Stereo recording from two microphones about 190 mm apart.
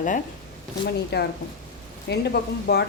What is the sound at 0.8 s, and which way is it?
A woman's voice, 60° left (ahead or behind).